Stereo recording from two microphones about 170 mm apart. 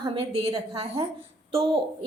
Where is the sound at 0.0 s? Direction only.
30° right (ahead or behind).